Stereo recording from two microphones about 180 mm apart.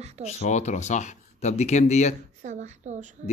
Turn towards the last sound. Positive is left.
turn(degrees=-40)  # may be behind; listen again after turning